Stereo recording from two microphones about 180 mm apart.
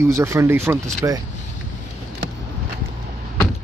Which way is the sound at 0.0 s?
15° right (ahead or behind).